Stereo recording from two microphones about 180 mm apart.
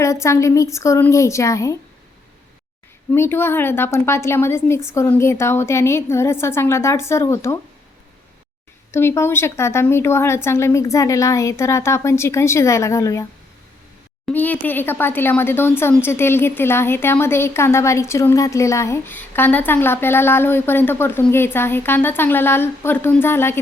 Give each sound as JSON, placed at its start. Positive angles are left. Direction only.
{"t": 0.0, "sound": "speech", "side_deg": 15}
{"t": 3.1, "sound": "speech", "side_deg": 10}
{"t": 8.9, "sound": "speech", "side_deg": 15}
{"t": 14.3, "sound": "speech", "side_deg": 10}